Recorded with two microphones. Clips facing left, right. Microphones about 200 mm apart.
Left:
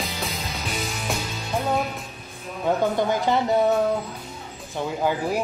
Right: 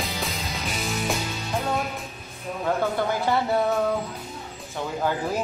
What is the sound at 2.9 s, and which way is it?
Music, 15° left (ahead or behind).